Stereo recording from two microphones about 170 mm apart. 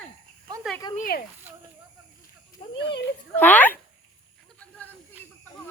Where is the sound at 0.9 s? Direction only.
55° left (ahead or behind).